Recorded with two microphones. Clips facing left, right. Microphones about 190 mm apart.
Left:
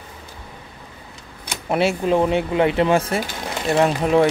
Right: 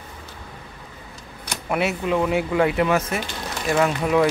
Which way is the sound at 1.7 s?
30° left (ahead or behind).